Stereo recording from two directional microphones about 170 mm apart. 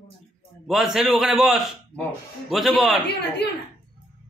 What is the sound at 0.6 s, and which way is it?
A man's voice, centre (ahead or behind).